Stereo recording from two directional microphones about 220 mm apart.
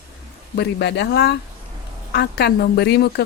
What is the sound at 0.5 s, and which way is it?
Speech, 50° left (ahead or behind).